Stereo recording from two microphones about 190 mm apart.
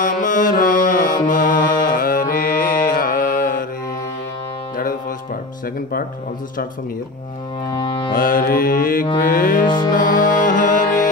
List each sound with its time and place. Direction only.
0.0 s mantra: 45° left (ahead or behind)
7.7 s music: 25° left (ahead or behind)
8.1 s music: 50° left (ahead or behind)